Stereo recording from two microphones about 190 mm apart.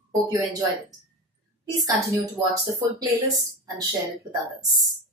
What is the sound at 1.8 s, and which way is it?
Speech, 20° right (ahead or behind).